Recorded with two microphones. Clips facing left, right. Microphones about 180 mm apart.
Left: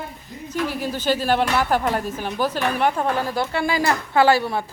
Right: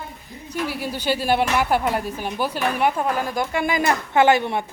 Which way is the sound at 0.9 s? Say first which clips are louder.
Even; 10° right (ahead or behind).